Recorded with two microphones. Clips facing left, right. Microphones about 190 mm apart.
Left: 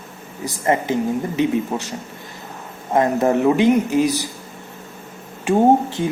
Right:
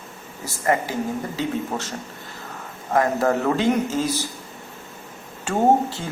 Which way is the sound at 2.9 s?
20° left (ahead or behind).